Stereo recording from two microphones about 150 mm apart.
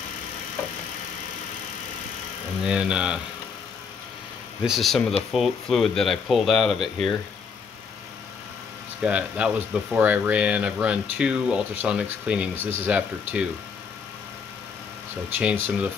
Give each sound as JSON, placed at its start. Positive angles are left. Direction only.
{"t": 2.6, "sound": "speech", "side_deg": -5}
{"t": 4.6, "sound": "speech", "side_deg": 0}
{"t": 9.0, "sound": "speech", "side_deg": -10}
{"t": 15.2, "sound": "speech", "side_deg": -15}